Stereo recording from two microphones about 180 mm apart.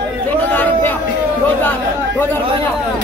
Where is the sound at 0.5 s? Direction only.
10° left (ahead or behind).